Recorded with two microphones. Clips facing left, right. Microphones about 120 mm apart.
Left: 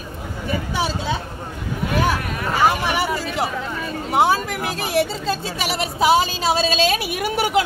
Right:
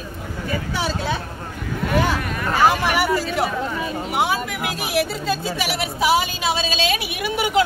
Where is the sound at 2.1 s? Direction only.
5° left (ahead or behind).